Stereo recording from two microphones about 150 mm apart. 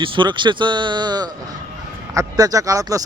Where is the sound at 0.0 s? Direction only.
30° right (ahead or behind).